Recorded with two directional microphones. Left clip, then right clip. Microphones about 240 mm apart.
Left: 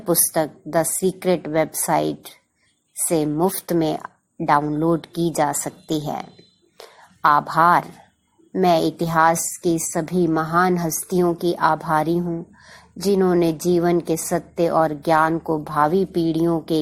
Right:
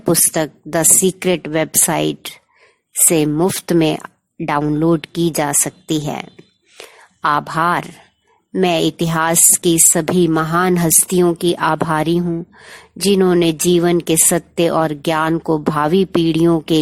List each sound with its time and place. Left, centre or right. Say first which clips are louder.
0.1 s a woman's voice: right 3 dB; right
3.1 s a woman's voice: right 4 dB; right
6.7 s whispering: right 5 dB; right
8.5 s a woman's voice: right 2 dB; right